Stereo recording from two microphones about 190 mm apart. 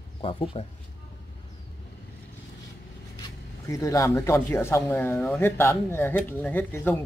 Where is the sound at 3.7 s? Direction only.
15° left (ahead or behind).